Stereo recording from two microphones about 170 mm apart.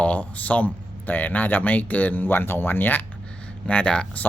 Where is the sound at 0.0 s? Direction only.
10° left (ahead or behind).